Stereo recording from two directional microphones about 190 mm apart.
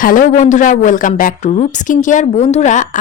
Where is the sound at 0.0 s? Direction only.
45° left (ahead or behind).